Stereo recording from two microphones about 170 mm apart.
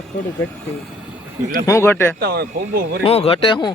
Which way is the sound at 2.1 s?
70° right (ahead or behind).